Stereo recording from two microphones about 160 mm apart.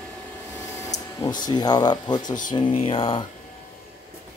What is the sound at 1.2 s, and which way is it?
Speech, 25° left (ahead or behind).